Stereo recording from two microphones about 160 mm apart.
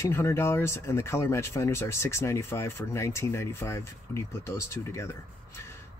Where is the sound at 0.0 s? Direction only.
15° left (ahead or behind).